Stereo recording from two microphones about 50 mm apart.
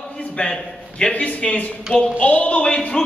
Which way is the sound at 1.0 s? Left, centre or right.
Left.